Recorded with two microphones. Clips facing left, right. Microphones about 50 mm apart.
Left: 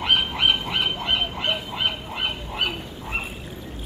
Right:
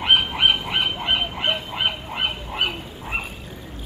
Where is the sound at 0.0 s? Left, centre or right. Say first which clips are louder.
Right 2 dB; centre.